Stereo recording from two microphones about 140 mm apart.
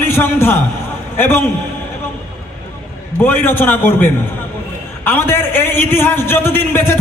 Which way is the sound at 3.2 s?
15° left (ahead or behind).